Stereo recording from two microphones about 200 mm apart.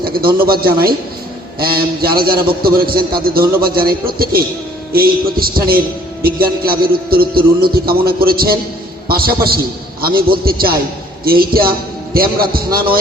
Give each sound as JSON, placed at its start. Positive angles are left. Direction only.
{"t": 0.0, "sound": "a man's voice", "side_deg": -50}